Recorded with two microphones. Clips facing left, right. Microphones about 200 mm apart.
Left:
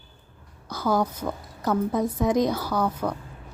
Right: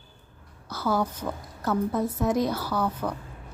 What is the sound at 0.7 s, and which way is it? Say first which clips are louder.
A woman's voice: left 2 dB; 15° left (ahead or behind).